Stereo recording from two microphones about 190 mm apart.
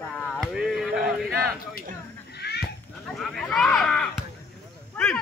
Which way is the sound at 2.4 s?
60° left (ahead or behind).